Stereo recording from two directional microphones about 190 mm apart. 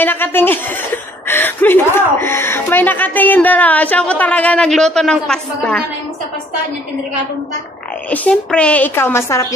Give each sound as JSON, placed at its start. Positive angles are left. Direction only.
{"t": 0.0, "sound": "speech", "side_deg": 10}
{"t": 8.1, "sound": "speech", "side_deg": 5}